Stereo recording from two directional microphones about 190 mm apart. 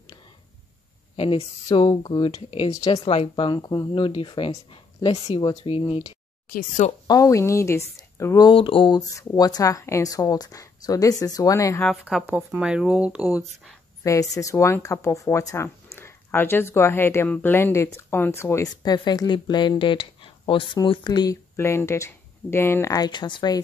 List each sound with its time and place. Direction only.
1.1 s a woman's voice: 30° left (ahead or behind)
2.7 s a woman's voice: 15° left (ahead or behind)
3.1 s a woman's voice: 30° left (ahead or behind)
11.8 s speech: centre (ahead or behind)
14.0 s a woman's voice: 15° left (ahead or behind)